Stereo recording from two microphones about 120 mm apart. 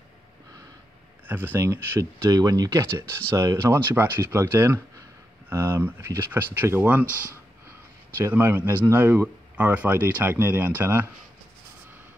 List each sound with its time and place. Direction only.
1.2 s speech: 15° right (ahead or behind)
7.1 s speech: 20° left (ahead or behind)
8.2 s speech: 20° right (ahead or behind)